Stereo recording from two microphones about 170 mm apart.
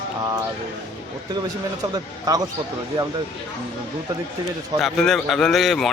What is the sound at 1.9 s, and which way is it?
Speech, 20° right (ahead or behind).